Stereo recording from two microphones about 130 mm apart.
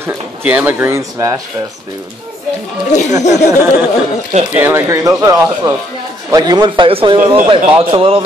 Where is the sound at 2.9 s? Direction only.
70° left (ahead or behind).